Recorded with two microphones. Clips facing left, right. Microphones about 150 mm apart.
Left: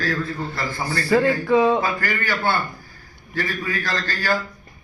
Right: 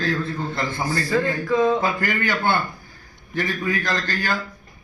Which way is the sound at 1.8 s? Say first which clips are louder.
Right 1 dB; 20° right (ahead or behind).